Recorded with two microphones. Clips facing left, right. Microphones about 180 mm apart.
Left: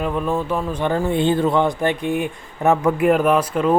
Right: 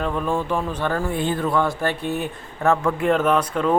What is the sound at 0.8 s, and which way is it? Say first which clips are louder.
Speech: left 4 dB; 15° left (ahead or behind).